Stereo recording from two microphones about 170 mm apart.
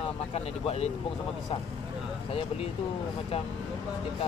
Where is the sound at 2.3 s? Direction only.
35° left (ahead or behind).